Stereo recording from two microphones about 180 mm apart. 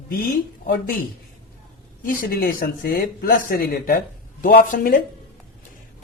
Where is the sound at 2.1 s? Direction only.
55° left (ahead or behind).